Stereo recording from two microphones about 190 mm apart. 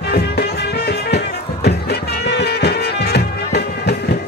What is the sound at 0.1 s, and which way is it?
Music, 55° left (ahead or behind).